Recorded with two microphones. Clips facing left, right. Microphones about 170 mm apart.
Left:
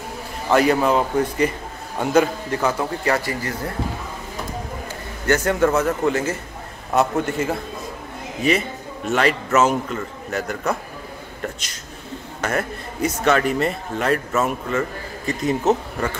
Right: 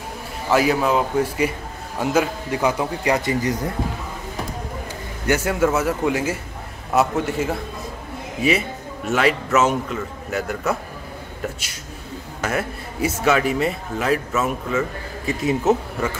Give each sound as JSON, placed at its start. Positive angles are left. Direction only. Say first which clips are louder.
{"t": 0.5, "sound": "a man's voice", "louder": "left 1 dB", "side_deg": -5}
{"t": 5.2, "sound": "a man's voice", "louder": "left 1 dB", "side_deg": -10}
{"t": 12.4, "sound": "a man's voice", "louder": "even", "side_deg": -5}